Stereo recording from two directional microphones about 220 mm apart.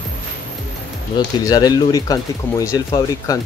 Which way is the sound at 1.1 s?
15° left (ahead or behind).